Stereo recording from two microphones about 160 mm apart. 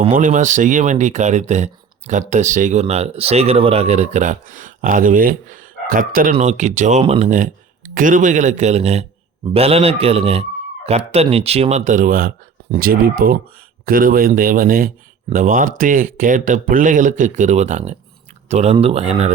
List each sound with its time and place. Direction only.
0.1 s speech: 50° right (ahead or behind)
2.8 s speech: 40° right (ahead or behind)